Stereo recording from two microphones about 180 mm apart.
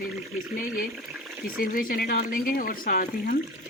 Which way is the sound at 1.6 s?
50° left (ahead or behind).